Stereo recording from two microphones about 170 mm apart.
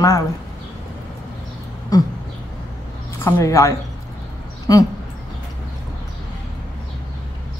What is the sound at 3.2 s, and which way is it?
A woman's voice, 20° left (ahead or behind).